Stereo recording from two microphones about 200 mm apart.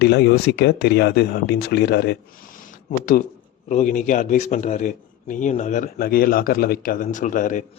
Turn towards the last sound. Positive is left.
turn(degrees=40)  # may be behind; listen again after turning